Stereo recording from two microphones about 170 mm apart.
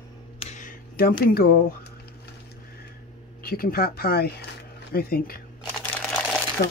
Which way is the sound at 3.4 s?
60° left (ahead or behind).